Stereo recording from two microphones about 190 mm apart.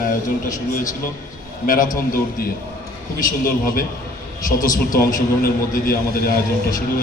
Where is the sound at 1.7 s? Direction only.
45° left (ahead or behind).